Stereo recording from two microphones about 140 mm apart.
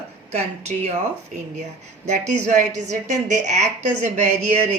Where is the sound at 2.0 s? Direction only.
60° right (ahead or behind).